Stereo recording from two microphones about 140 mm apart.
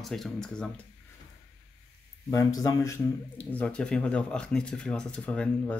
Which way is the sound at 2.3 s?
25° left (ahead or behind).